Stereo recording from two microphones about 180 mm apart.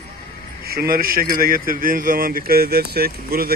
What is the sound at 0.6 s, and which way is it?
Speech, 55° right (ahead or behind).